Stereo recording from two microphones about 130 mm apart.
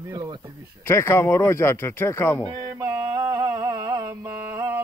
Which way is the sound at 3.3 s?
25° right (ahead or behind).